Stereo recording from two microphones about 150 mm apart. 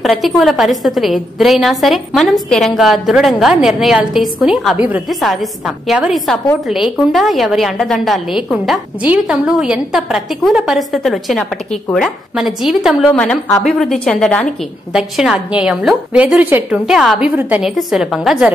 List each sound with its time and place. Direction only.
0.0 s a woman's voice: centre (ahead or behind)